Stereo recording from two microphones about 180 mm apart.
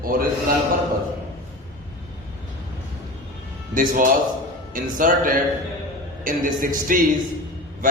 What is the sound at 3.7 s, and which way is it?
Speech, 50° right (ahead or behind).